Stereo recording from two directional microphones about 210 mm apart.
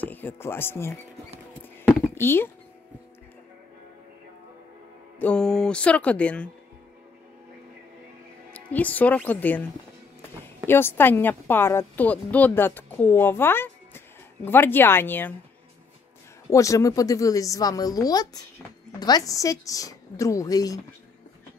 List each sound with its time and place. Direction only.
0.0 s speech: 10° left (ahead or behind)
1.9 s a sound: 10° left (ahead or behind)
5.2 s speech: 5° left (ahead or behind)
8.5 s speech: 5° left (ahead or behind)
10.7 s speech: 10° left (ahead or behind)
16.4 s speech: 15° left (ahead or behind)